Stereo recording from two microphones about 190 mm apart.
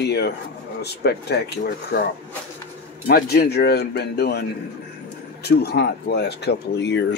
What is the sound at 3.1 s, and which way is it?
Speech, 55° left (ahead or behind).